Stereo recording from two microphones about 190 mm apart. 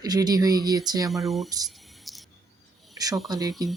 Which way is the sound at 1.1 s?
Centre (ahead or behind).